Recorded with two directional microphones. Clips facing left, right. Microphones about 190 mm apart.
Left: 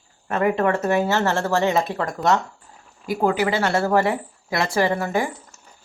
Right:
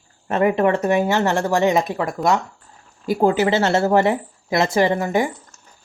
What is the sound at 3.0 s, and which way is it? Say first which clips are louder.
Speech: right 3 dB; 25° right (ahead or behind).